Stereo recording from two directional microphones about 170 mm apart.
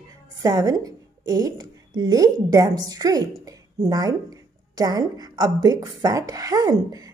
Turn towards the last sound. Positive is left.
turn(degrees=-20)  # may be behind; listen again after turning